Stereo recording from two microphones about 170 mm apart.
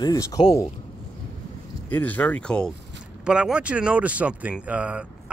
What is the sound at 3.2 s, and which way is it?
Speech, 5° right (ahead or behind).